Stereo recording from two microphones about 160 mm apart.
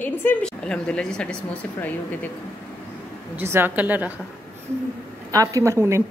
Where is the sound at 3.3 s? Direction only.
15° right (ahead or behind).